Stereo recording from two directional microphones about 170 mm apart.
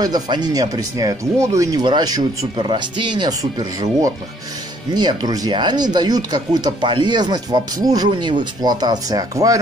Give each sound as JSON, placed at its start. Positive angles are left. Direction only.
{"t": 0.0, "sound": "speech", "side_deg": -25}
{"t": 4.9, "sound": "speech", "side_deg": -25}